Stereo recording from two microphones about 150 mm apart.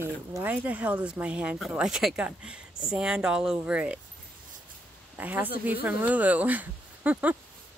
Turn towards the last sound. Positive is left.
turn(degrees=-10)  # may be behind; listen again after turning